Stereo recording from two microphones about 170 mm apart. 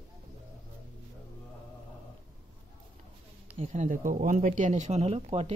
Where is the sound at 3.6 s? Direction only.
45° right (ahead or behind).